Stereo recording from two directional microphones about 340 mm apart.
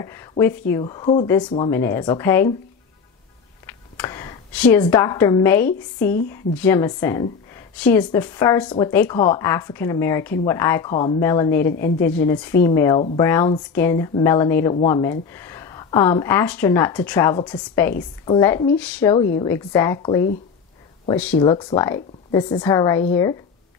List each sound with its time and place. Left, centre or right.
0.0 s speech: centre
3.6 s speech: centre